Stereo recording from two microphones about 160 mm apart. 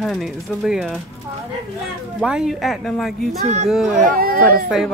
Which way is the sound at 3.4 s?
45° right (ahead or behind).